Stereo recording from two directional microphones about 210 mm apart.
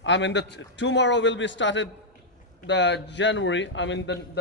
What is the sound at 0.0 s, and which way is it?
A man's voice, 60° left (ahead or behind).